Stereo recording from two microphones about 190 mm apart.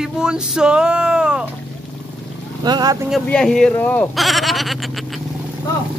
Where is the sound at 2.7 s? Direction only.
20° right (ahead or behind).